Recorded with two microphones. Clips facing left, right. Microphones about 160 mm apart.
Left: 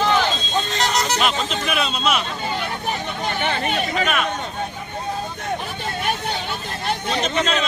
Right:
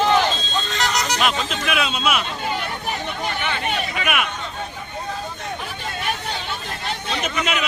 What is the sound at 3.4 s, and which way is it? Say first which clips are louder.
Chatter: left 4 dB; 35° left (ahead or behind).